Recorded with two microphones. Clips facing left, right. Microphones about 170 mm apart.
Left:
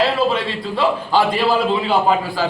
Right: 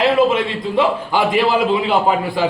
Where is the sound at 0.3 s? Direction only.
20° right (ahead or behind).